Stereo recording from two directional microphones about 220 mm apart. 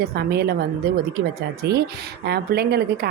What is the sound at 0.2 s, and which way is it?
Speech, 45° right (ahead or behind).